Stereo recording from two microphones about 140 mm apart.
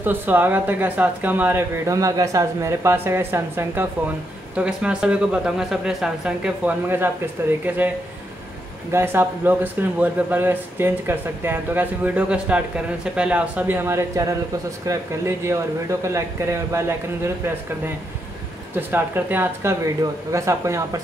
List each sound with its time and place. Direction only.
0.0 s speech: 15° right (ahead or behind)
8.9 s speech: 15° right (ahead or behind)
18.8 s speech: 15° right (ahead or behind)